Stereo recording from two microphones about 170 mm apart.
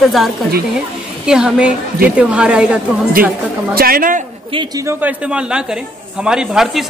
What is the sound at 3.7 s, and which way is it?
Speech, 60° right (ahead or behind).